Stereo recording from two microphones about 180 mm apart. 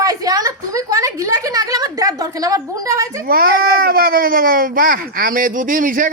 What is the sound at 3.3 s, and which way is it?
A woman's voice, 55° right (ahead or behind).